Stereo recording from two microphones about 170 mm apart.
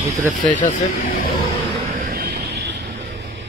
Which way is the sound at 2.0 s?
60° right (ahead or behind).